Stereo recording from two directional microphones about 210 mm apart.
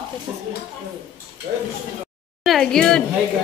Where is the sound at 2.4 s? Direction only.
Centre (ahead or behind).